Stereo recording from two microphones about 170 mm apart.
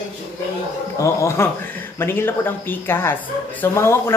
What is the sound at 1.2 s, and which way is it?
Speech, 15° left (ahead or behind).